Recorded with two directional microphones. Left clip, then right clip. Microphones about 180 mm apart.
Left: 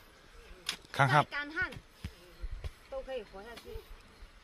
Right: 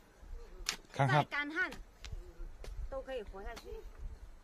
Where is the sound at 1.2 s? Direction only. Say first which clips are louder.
Even; 45° right (ahead or behind).